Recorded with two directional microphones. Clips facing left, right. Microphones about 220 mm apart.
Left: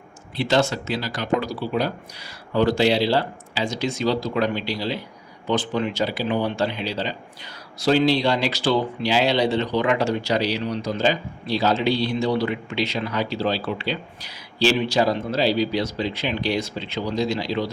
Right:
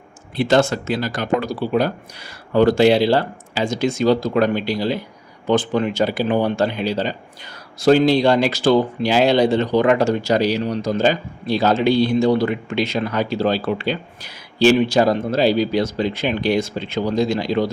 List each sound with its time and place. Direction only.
0.3 s speech: 50° right (ahead or behind)